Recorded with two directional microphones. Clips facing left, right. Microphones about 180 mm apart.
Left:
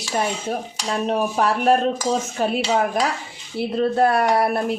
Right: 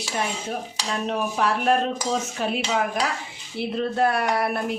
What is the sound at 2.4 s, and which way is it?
Speech, 40° left (ahead or behind).